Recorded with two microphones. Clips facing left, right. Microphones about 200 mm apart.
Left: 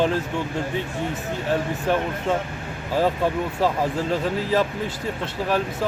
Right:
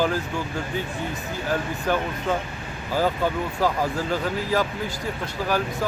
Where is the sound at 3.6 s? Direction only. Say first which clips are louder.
Even; 25° left (ahead or behind).